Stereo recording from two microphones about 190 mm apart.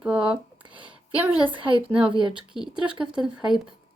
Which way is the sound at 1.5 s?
25° right (ahead or behind).